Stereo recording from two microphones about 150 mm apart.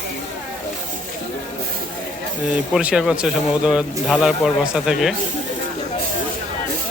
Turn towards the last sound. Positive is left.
turn(degrees=-5)  # may be behind; listen again after turning